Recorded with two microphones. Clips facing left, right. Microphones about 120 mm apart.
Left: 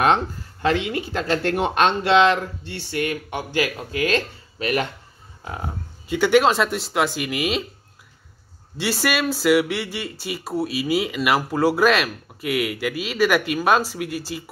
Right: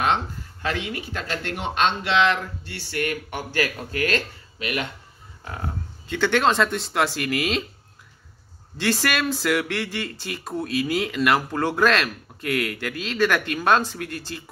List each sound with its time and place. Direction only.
0.6 s speech: 30° left (ahead or behind)
2.1 s speech: 30° left (ahead or behind)
4.6 s speech: 40° left (ahead or behind)
5.4 s speech: 20° left (ahead or behind)
8.7 s speech: 5° left (ahead or behind)